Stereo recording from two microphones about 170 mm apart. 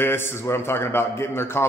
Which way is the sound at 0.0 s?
15° left (ahead or behind).